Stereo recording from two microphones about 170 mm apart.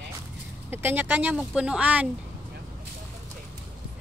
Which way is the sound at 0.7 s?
15° right (ahead or behind).